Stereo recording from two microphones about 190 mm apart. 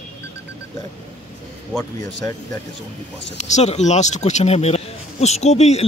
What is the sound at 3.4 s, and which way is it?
Speech, 35° left (ahead or behind).